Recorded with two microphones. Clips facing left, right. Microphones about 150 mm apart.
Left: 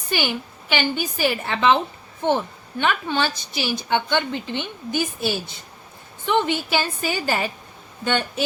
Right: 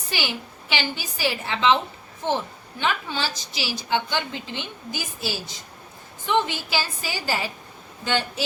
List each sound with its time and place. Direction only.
0.1 s a woman's voice: 50° left (ahead or behind)